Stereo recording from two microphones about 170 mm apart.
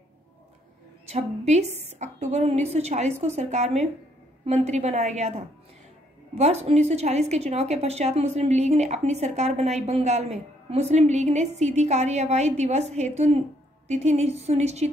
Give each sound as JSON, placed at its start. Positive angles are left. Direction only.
{"t": 1.0, "sound": "a woman's voice", "side_deg": -40}